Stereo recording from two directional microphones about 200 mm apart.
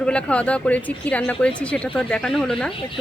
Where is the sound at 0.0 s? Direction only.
5° left (ahead or behind).